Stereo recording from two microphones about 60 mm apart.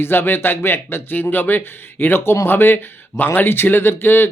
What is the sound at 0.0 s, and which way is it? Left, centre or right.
Speech, left.